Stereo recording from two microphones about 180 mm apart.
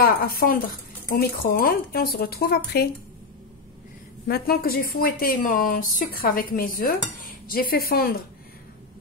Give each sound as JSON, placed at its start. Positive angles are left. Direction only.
{"t": 0.0, "sound": "speech", "side_deg": 55}
{"t": 4.3, "sound": "speech", "side_deg": 55}